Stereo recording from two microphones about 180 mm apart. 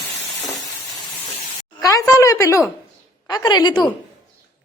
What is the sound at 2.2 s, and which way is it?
A woman's voice, 15° left (ahead or behind).